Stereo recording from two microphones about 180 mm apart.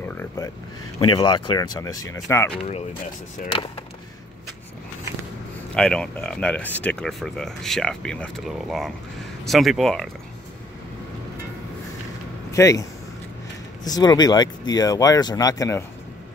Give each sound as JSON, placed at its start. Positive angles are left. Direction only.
{"t": 0.1, "sound": "a sound", "side_deg": 10}
{"t": 1.0, "sound": "speech", "side_deg": 25}
{"t": 3.4, "sound": "speech", "side_deg": 30}
{"t": 5.8, "sound": "speech", "side_deg": 5}
{"t": 12.4, "sound": "speech", "side_deg": 15}
{"t": 13.8, "sound": "speech", "side_deg": 20}